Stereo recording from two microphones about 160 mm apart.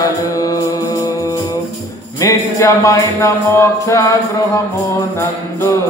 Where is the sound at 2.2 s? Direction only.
20° left (ahead or behind).